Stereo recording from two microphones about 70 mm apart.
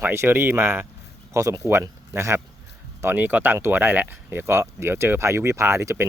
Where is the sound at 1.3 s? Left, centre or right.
Right.